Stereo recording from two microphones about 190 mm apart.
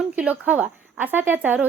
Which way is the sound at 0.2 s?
10° right (ahead or behind).